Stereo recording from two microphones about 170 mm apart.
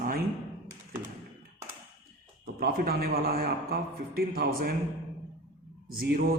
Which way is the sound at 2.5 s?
60° right (ahead or behind).